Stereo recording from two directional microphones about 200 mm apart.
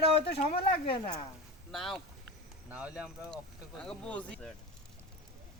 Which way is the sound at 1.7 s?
Centre (ahead or behind).